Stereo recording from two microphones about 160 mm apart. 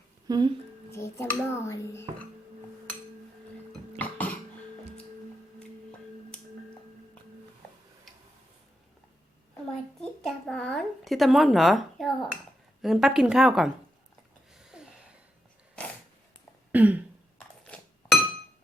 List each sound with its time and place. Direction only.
0.3 s speech: 25° right (ahead or behind)
0.9 s a child's voice: 15° left (ahead or behind)
3.9 s cough: 10° left (ahead or behind)
10.0 s a sound: centre (ahead or behind)
12.8 s speech: centre (ahead or behind)
14.5 s a sound: 5° right (ahead or behind)
15.8 s dog: 5° left (ahead or behind)
16.7 s throat clearing: 10° right (ahead or behind)
17.6 s chink: 5° left (ahead or behind)